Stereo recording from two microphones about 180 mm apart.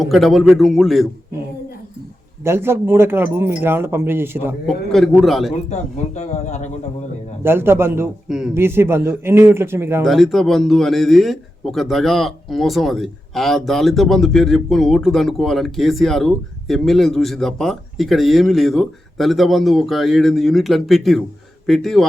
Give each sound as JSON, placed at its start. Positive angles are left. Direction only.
{"t": 0.0, "sound": "speech", "side_deg": 0}
{"t": 2.4, "sound": "a man's voice", "side_deg": -15}
{"t": 4.6, "sound": "speech", "side_deg": 0}
{"t": 5.6, "sound": "speech", "side_deg": 40}
{"t": 7.4, "sound": "a man's voice", "side_deg": -15}
{"t": 10.0, "sound": "speech", "side_deg": 0}